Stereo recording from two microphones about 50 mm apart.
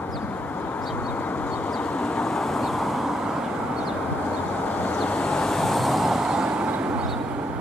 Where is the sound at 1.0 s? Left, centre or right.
Left.